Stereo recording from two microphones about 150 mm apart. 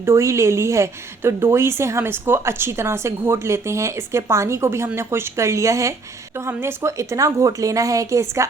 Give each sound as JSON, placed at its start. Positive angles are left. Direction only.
{"t": 0.0, "sound": "a woman's voice", "side_deg": -20}